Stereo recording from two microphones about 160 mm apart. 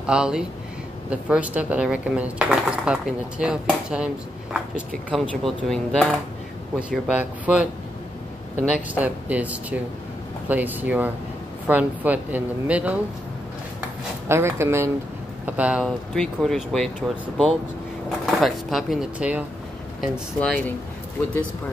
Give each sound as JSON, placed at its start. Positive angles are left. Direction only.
{"t": 0.0, "sound": "speech", "side_deg": -5}
{"t": 6.8, "sound": "speech", "side_deg": -5}
{"t": 8.7, "sound": "speech", "side_deg": -10}
{"t": 14.3, "sound": "speech", "side_deg": -15}
{"t": 18.2, "sound": "speech", "side_deg": 0}
{"t": 20.3, "sound": "speech", "side_deg": 5}